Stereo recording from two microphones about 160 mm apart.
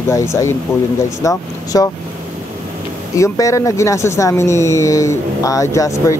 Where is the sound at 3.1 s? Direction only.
20° left (ahead or behind).